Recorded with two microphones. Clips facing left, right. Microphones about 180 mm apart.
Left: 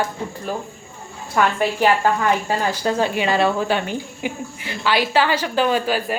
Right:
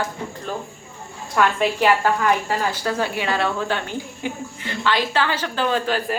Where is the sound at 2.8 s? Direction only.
20° left (ahead or behind).